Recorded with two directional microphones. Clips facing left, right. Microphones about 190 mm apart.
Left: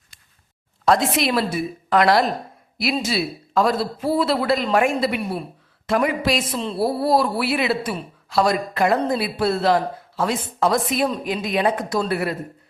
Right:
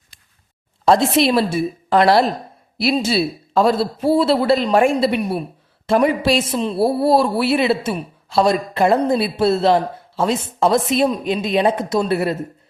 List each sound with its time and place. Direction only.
0.9 s speech: 30° right (ahead or behind)